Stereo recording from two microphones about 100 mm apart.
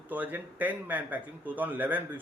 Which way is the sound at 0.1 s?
20° right (ahead or behind).